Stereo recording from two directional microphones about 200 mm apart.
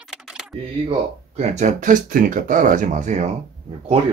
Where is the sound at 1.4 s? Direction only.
35° right (ahead or behind).